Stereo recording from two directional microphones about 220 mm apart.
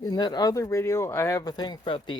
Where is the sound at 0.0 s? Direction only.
20° left (ahead or behind).